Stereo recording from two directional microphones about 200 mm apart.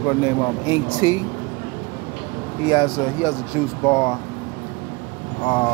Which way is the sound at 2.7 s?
25° left (ahead or behind).